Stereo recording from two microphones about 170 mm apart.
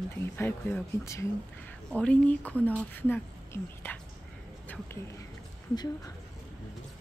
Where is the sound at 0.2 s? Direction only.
15° left (ahead or behind).